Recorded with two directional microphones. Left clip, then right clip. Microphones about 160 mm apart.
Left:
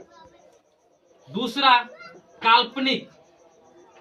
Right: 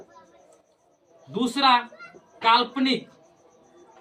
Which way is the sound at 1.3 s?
15° right (ahead or behind).